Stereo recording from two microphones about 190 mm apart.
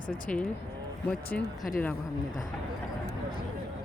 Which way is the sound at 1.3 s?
5° left (ahead or behind).